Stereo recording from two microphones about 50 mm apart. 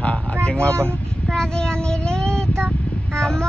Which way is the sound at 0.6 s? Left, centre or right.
Right.